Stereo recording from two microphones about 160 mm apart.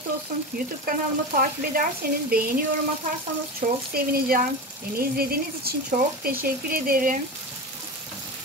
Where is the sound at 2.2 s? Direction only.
70° right (ahead or behind).